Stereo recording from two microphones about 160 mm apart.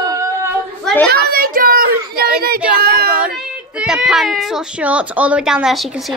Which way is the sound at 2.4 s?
75° right (ahead or behind).